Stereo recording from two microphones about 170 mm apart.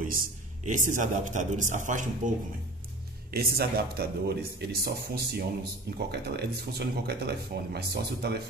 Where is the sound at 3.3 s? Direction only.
65° right (ahead or behind).